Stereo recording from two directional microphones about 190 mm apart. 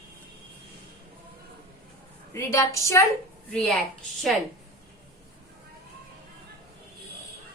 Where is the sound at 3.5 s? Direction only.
Centre (ahead or behind).